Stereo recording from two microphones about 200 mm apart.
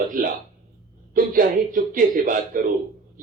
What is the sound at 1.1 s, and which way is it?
A man's voice, 45° right (ahead or behind).